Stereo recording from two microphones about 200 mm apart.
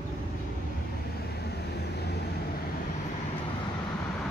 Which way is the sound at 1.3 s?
55° left (ahead or behind).